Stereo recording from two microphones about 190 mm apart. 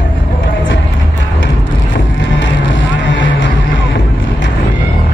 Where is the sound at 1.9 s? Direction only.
75° left (ahead or behind).